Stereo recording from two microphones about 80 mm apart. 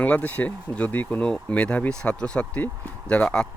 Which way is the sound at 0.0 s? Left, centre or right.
Left.